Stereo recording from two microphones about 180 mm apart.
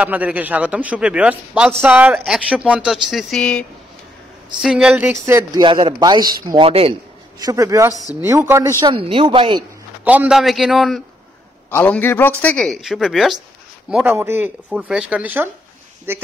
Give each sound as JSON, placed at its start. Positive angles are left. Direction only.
{"t": 0.0, "sound": "a man's voice", "side_deg": -10}
{"t": 5.2, "sound": "speech", "side_deg": -20}
{"t": 7.3, "sound": "a man's voice", "side_deg": -20}
{"t": 8.9, "sound": "speech", "side_deg": -30}
{"t": 10.0, "sound": "speech", "side_deg": -10}
{"t": 11.7, "sound": "a man's voice", "side_deg": 10}